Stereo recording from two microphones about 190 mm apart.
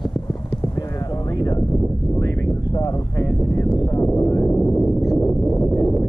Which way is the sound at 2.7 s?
20° left (ahead or behind).